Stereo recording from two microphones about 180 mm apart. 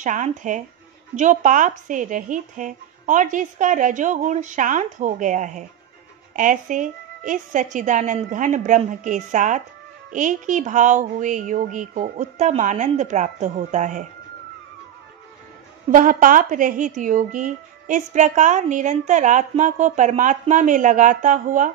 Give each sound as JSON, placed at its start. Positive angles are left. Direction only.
{"t": 0.0, "sound": "speech", "side_deg": -45}
{"t": 15.9, "sound": "speech", "side_deg": -50}